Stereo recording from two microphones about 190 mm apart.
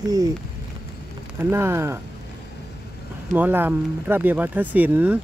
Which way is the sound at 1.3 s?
15° right (ahead or behind).